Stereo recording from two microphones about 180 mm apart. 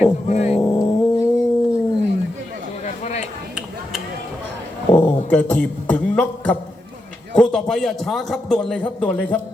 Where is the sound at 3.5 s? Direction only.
Centre (ahead or behind).